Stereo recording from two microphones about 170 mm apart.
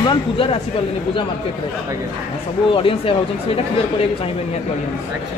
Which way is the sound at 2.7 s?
35° left (ahead or behind).